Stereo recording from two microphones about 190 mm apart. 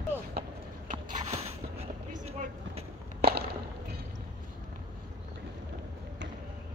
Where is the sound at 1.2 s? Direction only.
35° right (ahead or behind).